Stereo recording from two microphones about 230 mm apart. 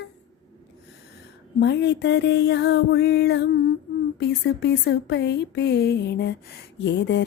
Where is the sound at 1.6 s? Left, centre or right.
Left.